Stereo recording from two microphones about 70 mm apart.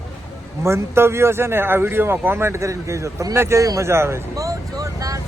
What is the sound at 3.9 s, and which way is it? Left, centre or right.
Speech, right.